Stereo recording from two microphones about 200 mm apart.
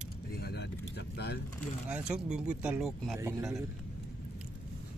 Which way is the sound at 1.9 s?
5° right (ahead or behind).